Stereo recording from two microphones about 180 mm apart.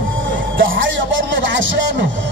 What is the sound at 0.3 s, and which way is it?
Music, 90° right.